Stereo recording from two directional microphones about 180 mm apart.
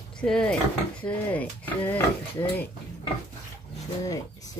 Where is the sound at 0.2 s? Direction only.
5° left (ahead or behind).